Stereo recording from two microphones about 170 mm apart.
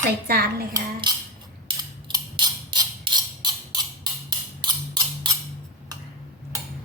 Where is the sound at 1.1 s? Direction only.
25° right (ahead or behind).